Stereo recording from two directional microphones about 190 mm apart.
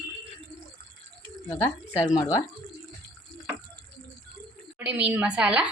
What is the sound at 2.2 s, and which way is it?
Speech, 15° left (ahead or behind).